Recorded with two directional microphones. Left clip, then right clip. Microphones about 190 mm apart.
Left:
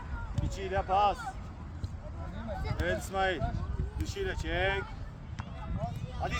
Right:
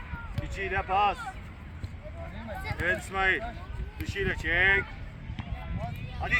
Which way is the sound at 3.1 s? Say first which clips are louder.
Right 4 dB; 50° left (ahead or behind).